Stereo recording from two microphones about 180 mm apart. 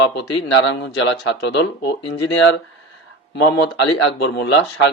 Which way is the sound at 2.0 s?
90° left.